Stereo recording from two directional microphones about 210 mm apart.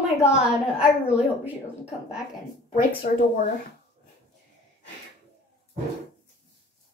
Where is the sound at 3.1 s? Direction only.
40° left (ahead or behind).